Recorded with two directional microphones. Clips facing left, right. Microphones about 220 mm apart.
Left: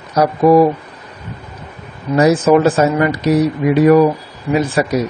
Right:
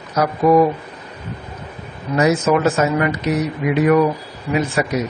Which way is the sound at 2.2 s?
35° left (ahead or behind).